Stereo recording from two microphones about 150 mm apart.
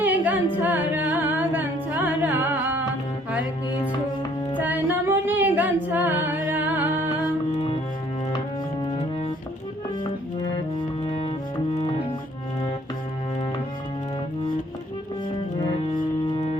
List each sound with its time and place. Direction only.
0.0 s humming: 10° right (ahead or behind)
0.6 s music: 10° right (ahead or behind)
4.5 s music: 10° right (ahead or behind)
7.5 s music: 40° left (ahead or behind)
10.0 s music: 30° left (ahead or behind)
11.0 s cello: 40° left (ahead or behind)
15.7 s music: 35° left (ahead or behind)